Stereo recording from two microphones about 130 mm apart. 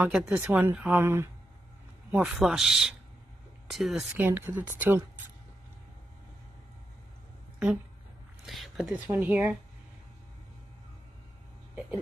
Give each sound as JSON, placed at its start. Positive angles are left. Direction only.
{"t": 0.0, "sound": "a man's voice", "side_deg": -5}
{"t": 0.4, "sound": "a man's voice", "side_deg": -15}
{"t": 4.2, "sound": "speech", "side_deg": -15}
{"t": 7.5, "sound": "speech", "side_deg": -10}
{"t": 8.9, "sound": "speech", "side_deg": -15}